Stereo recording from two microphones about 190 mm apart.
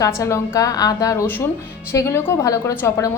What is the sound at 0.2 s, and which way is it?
A woman's voice, 15° left (ahead or behind).